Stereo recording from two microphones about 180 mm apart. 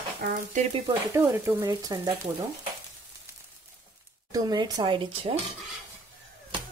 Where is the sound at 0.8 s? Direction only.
20° right (ahead or behind).